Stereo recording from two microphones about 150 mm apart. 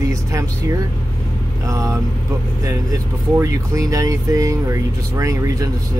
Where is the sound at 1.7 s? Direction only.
20° right (ahead or behind).